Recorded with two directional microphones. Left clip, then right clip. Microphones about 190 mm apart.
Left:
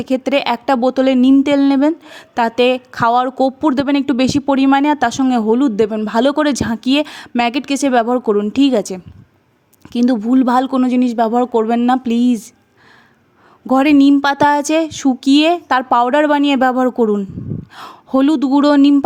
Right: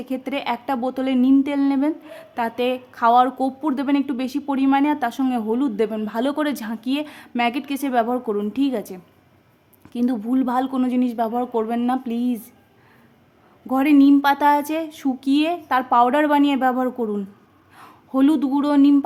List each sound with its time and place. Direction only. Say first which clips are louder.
0.0 s speech: left 10 dB; 40° left (ahead or behind)
13.7 s speech: left 5 dB; 40° left (ahead or behind)